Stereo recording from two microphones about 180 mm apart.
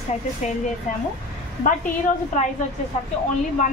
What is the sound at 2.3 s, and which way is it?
Speech, 45° left (ahead or behind).